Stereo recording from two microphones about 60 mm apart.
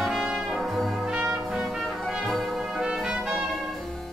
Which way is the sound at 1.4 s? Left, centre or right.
Centre.